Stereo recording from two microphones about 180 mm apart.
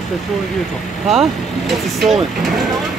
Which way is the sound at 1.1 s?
Centre (ahead or behind).